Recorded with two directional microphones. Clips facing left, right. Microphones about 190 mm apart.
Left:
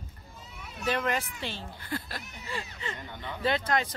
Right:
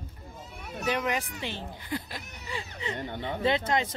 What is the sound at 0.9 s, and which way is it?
Speech, 15° right (ahead or behind).